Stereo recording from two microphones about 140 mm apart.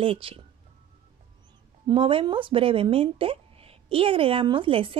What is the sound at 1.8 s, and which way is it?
Speech, 35° right (ahead or behind).